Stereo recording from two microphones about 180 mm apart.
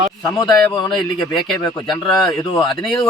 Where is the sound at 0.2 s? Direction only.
20° left (ahead or behind).